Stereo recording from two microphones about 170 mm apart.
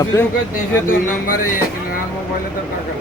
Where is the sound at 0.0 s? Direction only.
20° left (ahead or behind).